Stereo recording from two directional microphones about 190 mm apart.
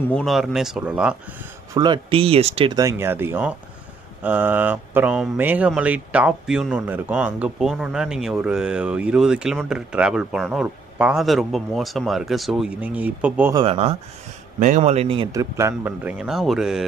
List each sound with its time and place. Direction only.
0.1 s speech: centre (ahead or behind)
1.7 s speech: 25° right (ahead or behind)
13.6 s speech: 30° right (ahead or behind)
15.3 s speech: 15° right (ahead or behind)